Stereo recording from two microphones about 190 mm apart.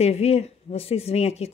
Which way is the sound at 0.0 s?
35° left (ahead or behind).